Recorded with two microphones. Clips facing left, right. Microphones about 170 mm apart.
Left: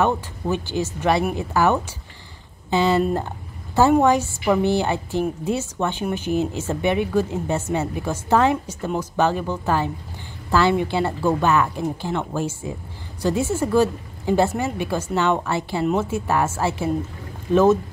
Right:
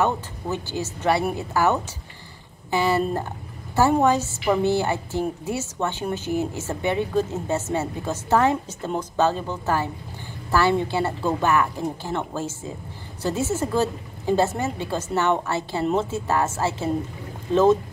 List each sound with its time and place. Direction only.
0.0 s a woman's voice: 15° left (ahead or behind)
3.0 s a woman's voice: 10° left (ahead or behind)